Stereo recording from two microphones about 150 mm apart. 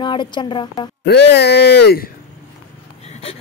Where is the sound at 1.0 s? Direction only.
90° left.